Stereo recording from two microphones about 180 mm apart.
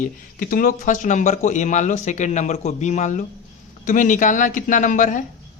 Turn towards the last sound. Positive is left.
turn(degrees=45)  # may be behind; listen again after turning